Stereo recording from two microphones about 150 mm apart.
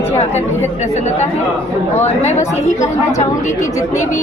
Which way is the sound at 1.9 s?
50° left (ahead or behind).